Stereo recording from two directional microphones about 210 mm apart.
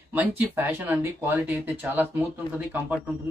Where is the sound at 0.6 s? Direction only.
10° right (ahead or behind).